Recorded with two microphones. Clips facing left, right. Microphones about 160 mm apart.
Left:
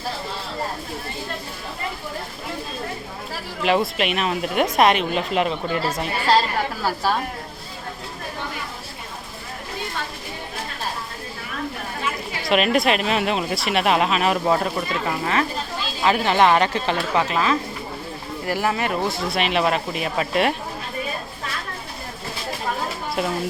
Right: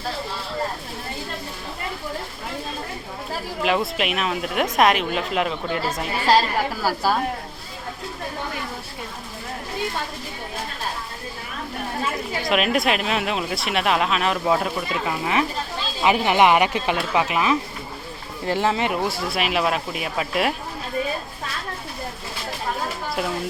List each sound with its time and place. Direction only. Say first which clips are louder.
3.6 s speech: left 2 dB; centre (ahead or behind)
12.5 s speech: left 2 dB; centre (ahead or behind); by 18.9 s 20° right (ahead or behind)
19.0 s speech: left 1 dB; 5° right (ahead or behind)